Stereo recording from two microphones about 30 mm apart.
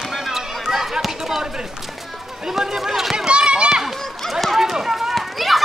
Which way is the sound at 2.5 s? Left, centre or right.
Centre.